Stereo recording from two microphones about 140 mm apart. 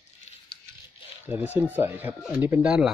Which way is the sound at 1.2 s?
15° right (ahead or behind).